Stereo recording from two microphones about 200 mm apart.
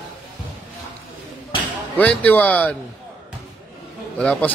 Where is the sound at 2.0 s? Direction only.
10° left (ahead or behind).